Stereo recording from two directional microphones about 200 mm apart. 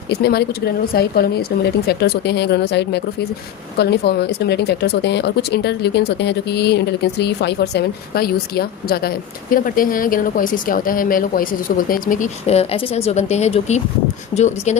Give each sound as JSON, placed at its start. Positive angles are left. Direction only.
{"t": 0.1, "sound": "speech", "side_deg": 55}